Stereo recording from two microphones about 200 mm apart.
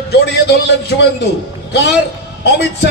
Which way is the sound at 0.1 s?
55° left (ahead or behind).